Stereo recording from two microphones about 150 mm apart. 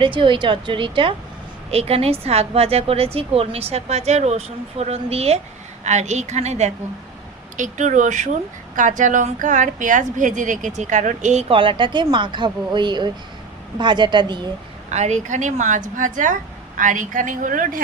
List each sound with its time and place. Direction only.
0.0 s a woman's voice: 35° right (ahead or behind)
14.8 s speech: 50° right (ahead or behind)